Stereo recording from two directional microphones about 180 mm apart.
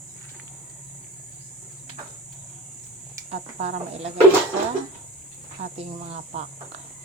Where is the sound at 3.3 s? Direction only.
35° right (ahead or behind).